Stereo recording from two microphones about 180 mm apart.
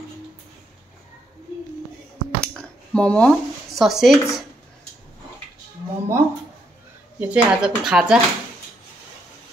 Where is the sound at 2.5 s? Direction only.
5° left (ahead or behind).